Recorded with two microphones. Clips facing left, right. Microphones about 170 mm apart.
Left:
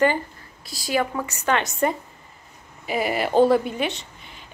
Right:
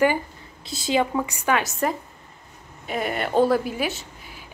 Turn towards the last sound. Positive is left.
turn(degrees=-5)  # may be behind; listen again after turning